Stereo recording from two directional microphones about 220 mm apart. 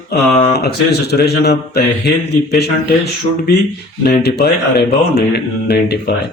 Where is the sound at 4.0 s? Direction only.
45° left (ahead or behind).